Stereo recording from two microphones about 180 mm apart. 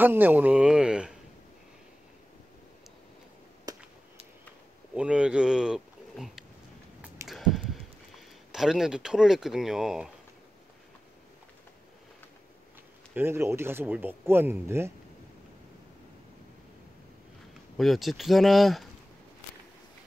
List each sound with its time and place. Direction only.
0.0 s speech: 10° right (ahead or behind)
3.7 s a sound: 20° right (ahead or behind)
4.9 s a sound: 5° right (ahead or behind)
8.5 s speech: centre (ahead or behind)
13.1 s speech: 15° right (ahead or behind)
17.7 s speech: centre (ahead or behind)